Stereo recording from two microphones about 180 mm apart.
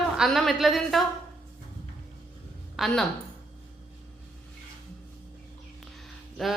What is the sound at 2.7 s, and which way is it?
Speech, centre (ahead or behind).